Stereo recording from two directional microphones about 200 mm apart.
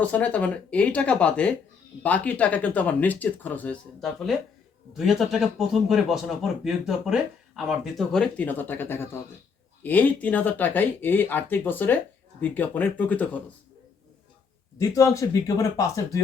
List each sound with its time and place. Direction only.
0.0 s speech: 5° left (ahead or behind)
14.8 s speech: 15° left (ahead or behind)